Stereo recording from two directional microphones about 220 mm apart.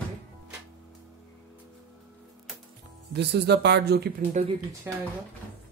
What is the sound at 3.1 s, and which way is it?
Speech, 50° right (ahead or behind).